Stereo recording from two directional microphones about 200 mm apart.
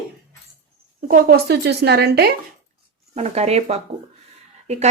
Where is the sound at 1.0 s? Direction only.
50° right (ahead or behind).